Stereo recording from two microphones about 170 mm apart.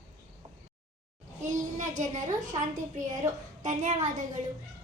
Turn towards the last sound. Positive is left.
turn(degrees=-45)  # may be behind; listen again after turning